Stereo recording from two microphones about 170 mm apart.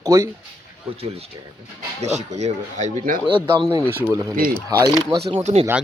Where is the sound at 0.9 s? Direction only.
35° right (ahead or behind).